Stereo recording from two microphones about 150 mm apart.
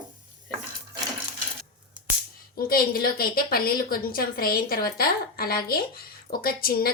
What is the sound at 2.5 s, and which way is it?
A woman's voice, 80° left.